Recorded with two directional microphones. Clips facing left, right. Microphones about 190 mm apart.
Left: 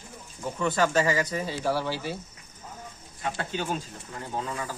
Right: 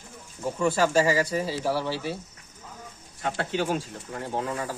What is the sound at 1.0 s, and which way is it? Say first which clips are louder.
Speech: right 4 dB; 30° right (ahead or behind).